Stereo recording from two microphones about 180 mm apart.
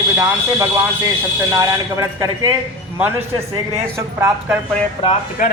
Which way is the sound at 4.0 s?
15° right (ahead or behind).